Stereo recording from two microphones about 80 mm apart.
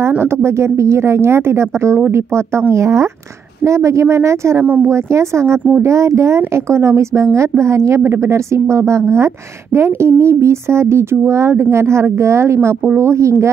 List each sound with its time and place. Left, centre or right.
0.2 s speech: right